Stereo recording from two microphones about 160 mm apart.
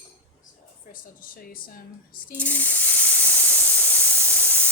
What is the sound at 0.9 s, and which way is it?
A woman's voice, 60° left (ahead or behind).